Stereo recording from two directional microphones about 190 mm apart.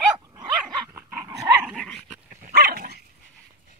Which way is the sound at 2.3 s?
50° right (ahead or behind).